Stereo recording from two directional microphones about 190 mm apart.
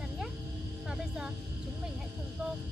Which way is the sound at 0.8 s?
5° right (ahead or behind).